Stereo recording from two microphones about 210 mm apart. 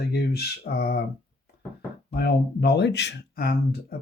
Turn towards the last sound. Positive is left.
turn(degrees=45)  # may be behind; listen again after turning